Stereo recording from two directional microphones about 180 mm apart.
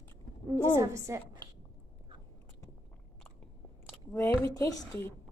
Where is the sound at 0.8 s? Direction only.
15° right (ahead or behind).